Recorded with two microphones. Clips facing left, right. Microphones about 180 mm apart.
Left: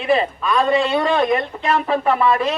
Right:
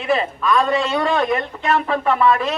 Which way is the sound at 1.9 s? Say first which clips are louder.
Left 1 dB; 5° left (ahead or behind).